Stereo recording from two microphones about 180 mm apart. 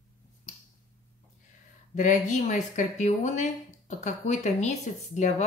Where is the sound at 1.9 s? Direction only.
45° left (ahead or behind).